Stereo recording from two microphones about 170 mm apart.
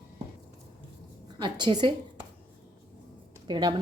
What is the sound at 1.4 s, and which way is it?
Speech, 25° right (ahead or behind).